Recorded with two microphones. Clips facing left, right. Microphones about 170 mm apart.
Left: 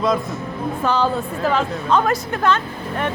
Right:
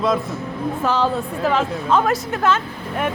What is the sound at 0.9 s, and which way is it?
A woman's voice, centre (ahead or behind).